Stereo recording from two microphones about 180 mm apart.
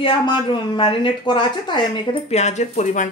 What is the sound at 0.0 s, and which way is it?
Speech, 25° left (ahead or behind).